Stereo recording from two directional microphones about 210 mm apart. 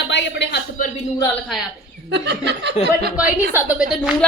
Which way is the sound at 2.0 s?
55° right (ahead or behind).